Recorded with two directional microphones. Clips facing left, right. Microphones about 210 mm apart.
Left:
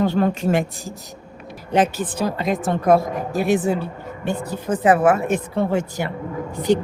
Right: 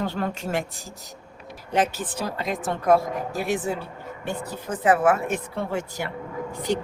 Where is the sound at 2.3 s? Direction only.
20° left (ahead or behind).